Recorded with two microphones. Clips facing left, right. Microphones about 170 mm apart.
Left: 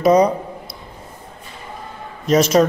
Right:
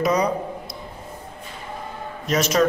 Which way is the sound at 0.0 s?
30° left (ahead or behind).